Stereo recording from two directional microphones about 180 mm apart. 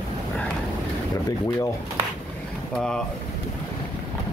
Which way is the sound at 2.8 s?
5° left (ahead or behind).